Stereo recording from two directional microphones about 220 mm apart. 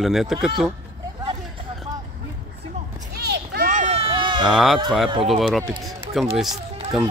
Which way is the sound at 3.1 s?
45° right (ahead or behind).